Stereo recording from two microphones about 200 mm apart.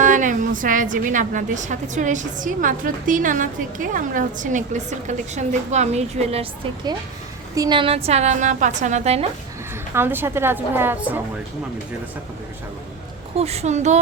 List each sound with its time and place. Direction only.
0.0 s a woman's voice: 40° right (ahead or behind)
9.9 s a woman's voice: 10° right (ahead or behind)
13.3 s a woman's voice: 30° right (ahead or behind)